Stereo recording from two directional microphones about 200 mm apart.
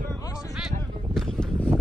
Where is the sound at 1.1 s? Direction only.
5° left (ahead or behind).